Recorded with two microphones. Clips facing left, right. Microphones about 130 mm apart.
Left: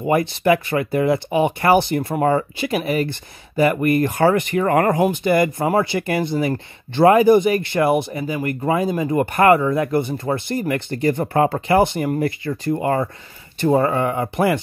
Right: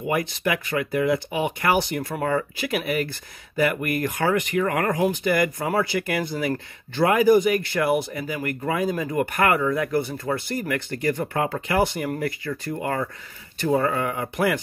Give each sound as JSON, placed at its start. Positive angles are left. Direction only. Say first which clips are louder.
{"t": 0.0, "sound": "speech", "louder": "left 6 dB", "side_deg": 35}